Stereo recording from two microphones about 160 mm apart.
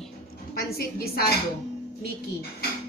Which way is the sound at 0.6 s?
75° left (ahead or behind).